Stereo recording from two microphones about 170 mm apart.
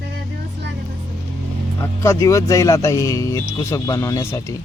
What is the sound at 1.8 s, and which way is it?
Speech, 15° left (ahead or behind).